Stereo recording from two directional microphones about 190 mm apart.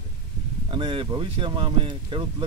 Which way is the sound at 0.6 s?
25° right (ahead or behind).